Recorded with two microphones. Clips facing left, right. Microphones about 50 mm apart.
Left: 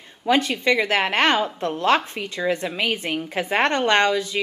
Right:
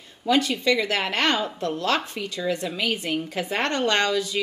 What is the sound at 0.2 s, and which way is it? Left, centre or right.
A woman's voice, left.